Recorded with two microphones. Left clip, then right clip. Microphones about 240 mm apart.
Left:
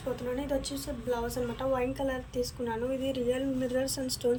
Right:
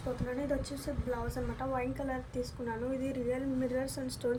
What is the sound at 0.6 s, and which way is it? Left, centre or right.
A woman's voice, right.